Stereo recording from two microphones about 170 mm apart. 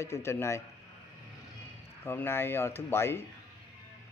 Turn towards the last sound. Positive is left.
turn(degrees=15)  # may be behind; listen again after turning